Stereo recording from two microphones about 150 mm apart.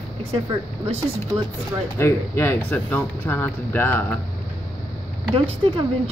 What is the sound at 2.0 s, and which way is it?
Speech, 15° left (ahead or behind).